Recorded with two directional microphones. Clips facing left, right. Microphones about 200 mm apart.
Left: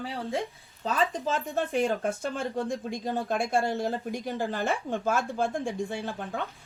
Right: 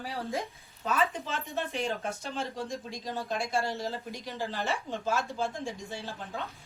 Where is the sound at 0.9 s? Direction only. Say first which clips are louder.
Left 3 dB; 40° left (ahead or behind); by 6.4 s 55° left (ahead or behind).